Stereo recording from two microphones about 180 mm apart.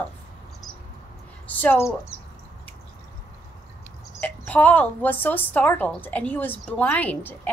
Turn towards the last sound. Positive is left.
turn(degrees=10)  # may be behind; listen again after turning